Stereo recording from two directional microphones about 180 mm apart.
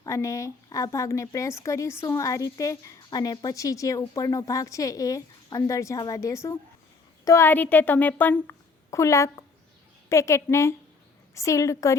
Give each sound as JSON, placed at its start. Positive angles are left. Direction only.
{"t": 0.0, "sound": "speech", "side_deg": 15}